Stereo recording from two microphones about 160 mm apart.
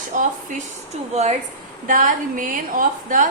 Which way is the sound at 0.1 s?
55° right (ahead or behind).